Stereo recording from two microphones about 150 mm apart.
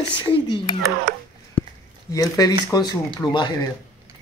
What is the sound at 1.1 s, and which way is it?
Speech, 90° right.